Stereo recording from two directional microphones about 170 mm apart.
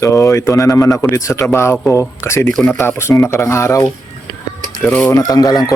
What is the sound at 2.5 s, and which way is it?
A man's voice, 5° left (ahead or behind).